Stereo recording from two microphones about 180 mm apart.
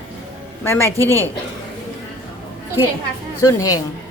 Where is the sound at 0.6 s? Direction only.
15° left (ahead or behind).